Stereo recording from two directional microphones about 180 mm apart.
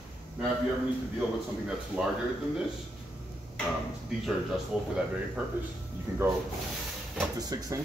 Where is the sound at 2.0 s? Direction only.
5° right (ahead or behind).